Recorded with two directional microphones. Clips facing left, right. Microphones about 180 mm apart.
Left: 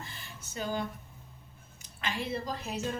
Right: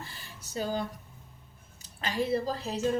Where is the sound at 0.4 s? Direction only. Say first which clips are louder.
Right 2 dB; 35° right (ahead or behind).